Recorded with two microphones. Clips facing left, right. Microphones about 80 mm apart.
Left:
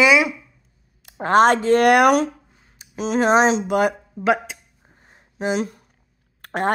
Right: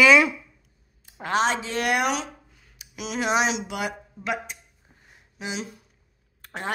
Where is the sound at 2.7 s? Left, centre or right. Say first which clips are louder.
Left 9 dB; left.